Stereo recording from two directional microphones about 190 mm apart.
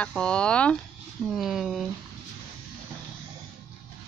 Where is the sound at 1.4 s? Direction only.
Centre (ahead or behind).